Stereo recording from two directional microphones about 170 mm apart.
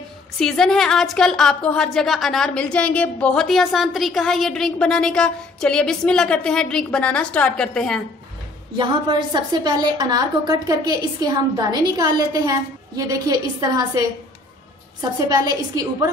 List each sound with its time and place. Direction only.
0.4 s a woman's voice: centre (ahead or behind)
8.7 s a woman's voice: 25° right (ahead or behind)